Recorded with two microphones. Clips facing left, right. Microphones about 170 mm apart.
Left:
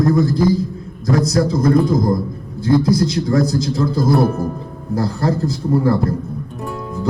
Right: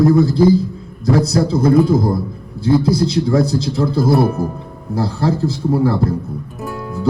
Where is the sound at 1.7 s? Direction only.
5° right (ahead or behind).